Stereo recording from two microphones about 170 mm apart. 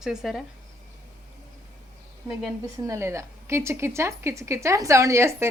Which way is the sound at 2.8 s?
15° right (ahead or behind).